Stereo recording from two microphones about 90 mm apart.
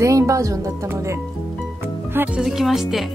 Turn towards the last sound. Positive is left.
turn(degrees=-5)  # may be behind; listen again after turning